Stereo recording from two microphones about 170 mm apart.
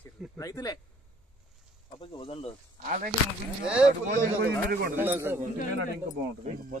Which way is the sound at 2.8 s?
50° right (ahead or behind).